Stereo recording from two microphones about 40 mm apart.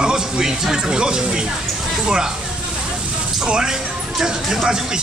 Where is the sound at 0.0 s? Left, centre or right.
Centre.